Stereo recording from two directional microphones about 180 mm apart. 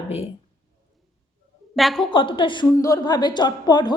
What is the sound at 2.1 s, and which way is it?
A woman's voice, 30° left (ahead or behind).